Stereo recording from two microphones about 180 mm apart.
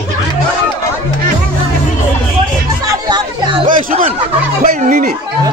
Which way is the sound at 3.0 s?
25° right (ahead or behind).